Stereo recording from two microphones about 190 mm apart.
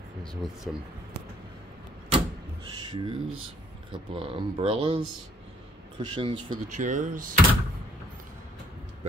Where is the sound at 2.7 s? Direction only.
25° right (ahead or behind).